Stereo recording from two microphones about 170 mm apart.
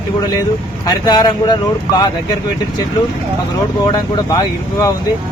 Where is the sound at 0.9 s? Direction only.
25° left (ahead or behind).